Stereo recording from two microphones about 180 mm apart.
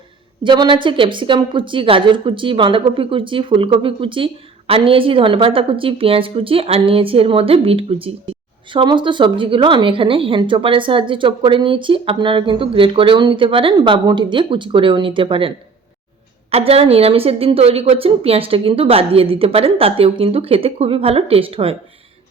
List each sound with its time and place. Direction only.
0.4 s speech: 25° right (ahead or behind)